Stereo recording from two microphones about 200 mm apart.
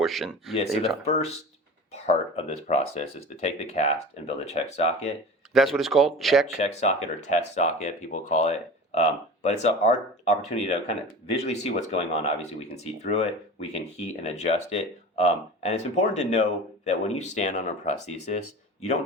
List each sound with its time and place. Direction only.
0.0 s speech: centre (ahead or behind)
1.0 s speech: 30° left (ahead or behind)
5.5 s speech: centre (ahead or behind)
6.6 s speech: 35° left (ahead or behind)